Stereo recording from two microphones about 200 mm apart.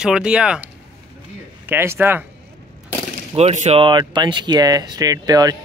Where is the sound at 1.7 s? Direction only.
10° right (ahead or behind).